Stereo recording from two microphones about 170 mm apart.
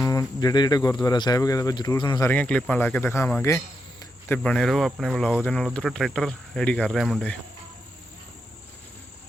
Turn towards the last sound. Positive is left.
turn(degrees=5)  # may be behind; listen again after turning